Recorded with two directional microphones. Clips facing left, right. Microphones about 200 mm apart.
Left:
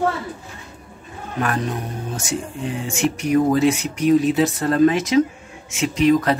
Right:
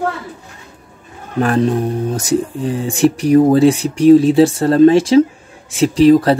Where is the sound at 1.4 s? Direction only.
30° right (ahead or behind).